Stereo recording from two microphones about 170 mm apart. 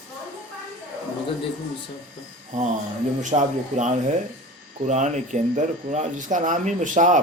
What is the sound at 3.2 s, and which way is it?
Speech, 45° right (ahead or behind).